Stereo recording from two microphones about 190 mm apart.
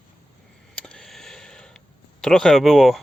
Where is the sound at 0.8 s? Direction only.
5° left (ahead or behind).